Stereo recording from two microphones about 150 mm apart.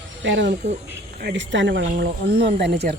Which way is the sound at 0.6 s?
50° right (ahead or behind).